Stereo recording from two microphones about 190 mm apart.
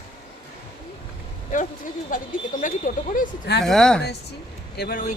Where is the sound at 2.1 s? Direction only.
45° left (ahead or behind).